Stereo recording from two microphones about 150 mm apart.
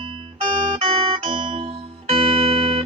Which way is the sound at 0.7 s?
40° right (ahead or behind).